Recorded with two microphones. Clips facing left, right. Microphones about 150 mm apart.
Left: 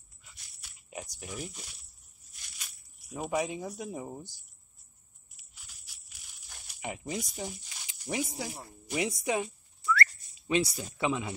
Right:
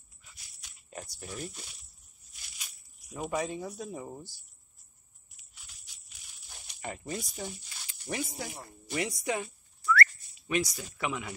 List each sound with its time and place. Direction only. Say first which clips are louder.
0.2 s a sound: even; centre (ahead or behind)
3.1 s speech: left 1 dB; 10° left (ahead or behind)
5.5 s jingle bell: even; 5° left (ahead or behind)
6.7 s speech: left 1 dB; 15° left (ahead or behind)
8.8 s whistling: left 1 dB; 15° left (ahead or behind)
10.5 s speech: left 2 dB; 25° left (ahead or behind)